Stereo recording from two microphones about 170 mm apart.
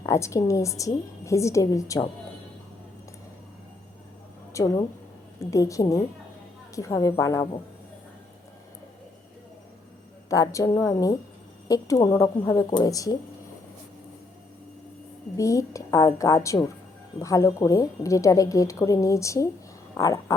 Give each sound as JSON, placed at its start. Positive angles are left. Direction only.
{"t": 0.1, "sound": "a woman's voice", "side_deg": 20}
{"t": 4.5, "sound": "a woman's voice", "side_deg": 20}
{"t": 10.2, "sound": "a woman's voice", "side_deg": 20}
{"t": 15.4, "sound": "a woman's voice", "side_deg": 20}